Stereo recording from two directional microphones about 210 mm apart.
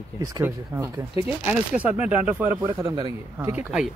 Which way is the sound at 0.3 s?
15° right (ahead or behind).